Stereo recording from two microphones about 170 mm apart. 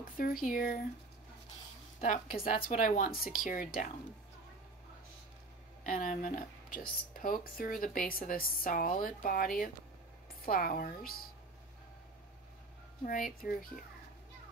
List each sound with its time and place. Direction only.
0.2 s a woman's voice: 55° left (ahead or behind)
2.0 s a woman's voice: 55° left (ahead or behind)
5.9 s a woman's voice: 50° left (ahead or behind)
13.0 s a woman's voice: 55° left (ahead or behind)